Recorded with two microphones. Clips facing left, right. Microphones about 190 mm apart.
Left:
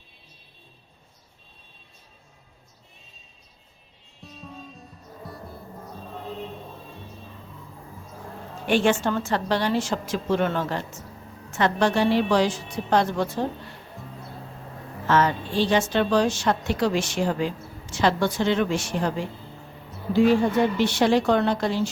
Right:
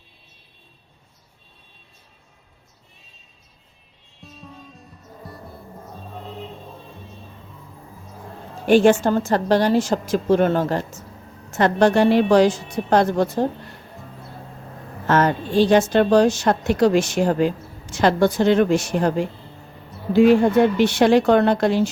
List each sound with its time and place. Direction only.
4.2 s music: centre (ahead or behind)
8.6 s a woman's voice: 40° right (ahead or behind)
15.0 s a woman's voice: 50° right (ahead or behind)
20.1 s speech: 65° right (ahead or behind)